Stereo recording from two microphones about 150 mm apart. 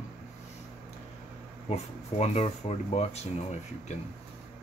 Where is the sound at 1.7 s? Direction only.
45° left (ahead or behind).